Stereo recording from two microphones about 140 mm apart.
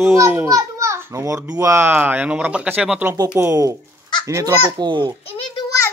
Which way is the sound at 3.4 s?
20° right (ahead or behind).